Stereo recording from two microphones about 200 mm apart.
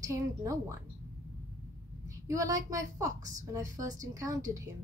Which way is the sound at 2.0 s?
15° right (ahead or behind).